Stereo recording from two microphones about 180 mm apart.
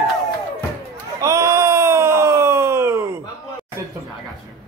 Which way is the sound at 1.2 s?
15° right (ahead or behind).